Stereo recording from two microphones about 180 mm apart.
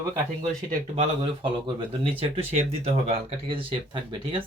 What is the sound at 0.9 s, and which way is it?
Speech, 30° right (ahead or behind).